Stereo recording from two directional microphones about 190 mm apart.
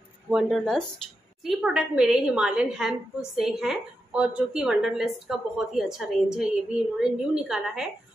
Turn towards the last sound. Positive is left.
turn(degrees=-5)  # may be behind; listen again after turning